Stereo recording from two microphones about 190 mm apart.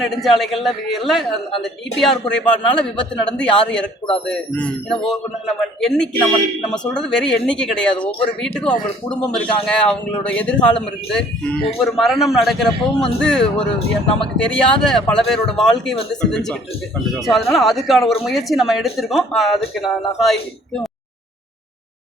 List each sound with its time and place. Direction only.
0.2 s speech: centre (ahead or behind)